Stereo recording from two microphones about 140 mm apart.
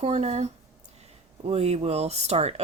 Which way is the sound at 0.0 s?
50° right (ahead or behind).